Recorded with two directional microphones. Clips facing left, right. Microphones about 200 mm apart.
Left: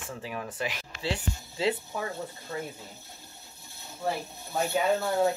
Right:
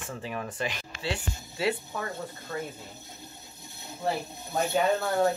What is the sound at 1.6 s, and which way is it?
Speech, 20° left (ahead or behind).